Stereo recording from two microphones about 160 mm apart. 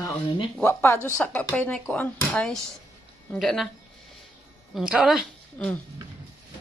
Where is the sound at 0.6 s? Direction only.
15° left (ahead or behind).